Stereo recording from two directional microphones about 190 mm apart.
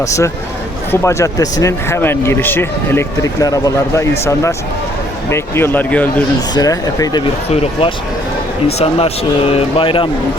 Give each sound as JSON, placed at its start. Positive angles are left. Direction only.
{"t": 0.0, "sound": "speech", "side_deg": 15}